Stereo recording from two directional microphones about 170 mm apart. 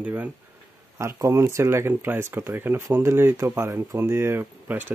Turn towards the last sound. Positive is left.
turn(degrees=-10)  # may be behind; listen again after turning